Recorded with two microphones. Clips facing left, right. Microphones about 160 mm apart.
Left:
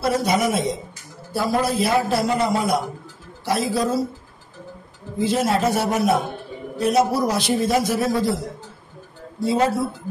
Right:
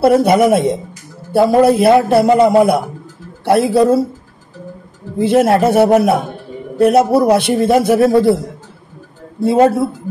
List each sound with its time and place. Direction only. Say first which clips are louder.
0.0 s a man's voice: right 10 dB; 60° right (ahead or behind)
5.2 s a man's voice: right 9 dB; 60° right (ahead or behind)
9.4 s a man's voice: right 9 dB; 55° right (ahead or behind)